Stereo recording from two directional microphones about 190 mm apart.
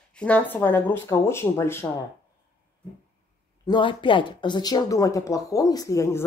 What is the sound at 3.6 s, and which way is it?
Speech, 25° left (ahead or behind).